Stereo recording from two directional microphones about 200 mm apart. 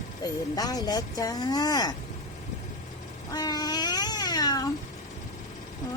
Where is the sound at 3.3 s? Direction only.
20° left (ahead or behind).